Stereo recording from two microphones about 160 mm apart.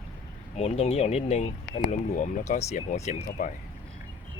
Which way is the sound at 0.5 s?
40° left (ahead or behind).